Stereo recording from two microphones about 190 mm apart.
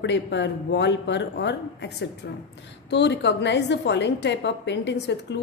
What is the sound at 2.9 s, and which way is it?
A woman's voice, 65° left (ahead or behind).